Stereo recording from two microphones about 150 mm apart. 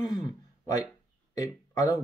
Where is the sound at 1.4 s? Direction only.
25° left (ahead or behind).